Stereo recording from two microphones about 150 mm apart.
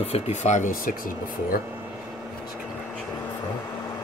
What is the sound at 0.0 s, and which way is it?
Speech, 50° left (ahead or behind).